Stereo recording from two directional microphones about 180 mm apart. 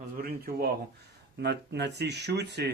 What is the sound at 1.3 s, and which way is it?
Speech, 70° right (ahead or behind).